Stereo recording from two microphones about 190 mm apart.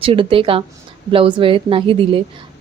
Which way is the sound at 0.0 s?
30° right (ahead or behind).